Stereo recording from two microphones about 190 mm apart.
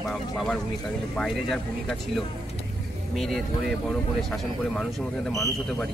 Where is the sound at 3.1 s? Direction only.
Centre (ahead or behind).